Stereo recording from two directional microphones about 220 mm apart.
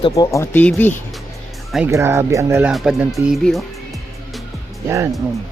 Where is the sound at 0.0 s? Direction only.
15° left (ahead or behind).